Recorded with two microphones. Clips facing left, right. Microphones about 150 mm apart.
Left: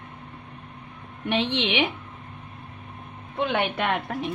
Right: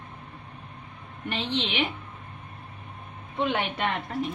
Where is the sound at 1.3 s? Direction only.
70° left (ahead or behind).